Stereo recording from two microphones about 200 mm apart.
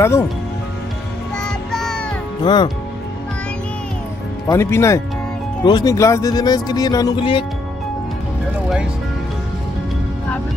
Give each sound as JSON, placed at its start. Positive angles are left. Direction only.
{"t": 0.0, "sound": "speech", "side_deg": 15}
{"t": 1.4, "sound": "music", "side_deg": 0}
{"t": 2.4, "sound": "speech", "side_deg": 20}
{"t": 4.5, "sound": "speech", "side_deg": 15}